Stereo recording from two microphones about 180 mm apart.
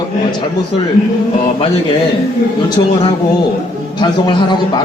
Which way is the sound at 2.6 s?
25° left (ahead or behind).